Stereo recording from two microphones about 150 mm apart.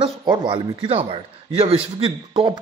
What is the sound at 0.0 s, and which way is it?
Speech, 30° right (ahead or behind).